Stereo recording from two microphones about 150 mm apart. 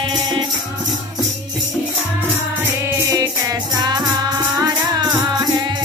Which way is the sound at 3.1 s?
25° right (ahead or behind).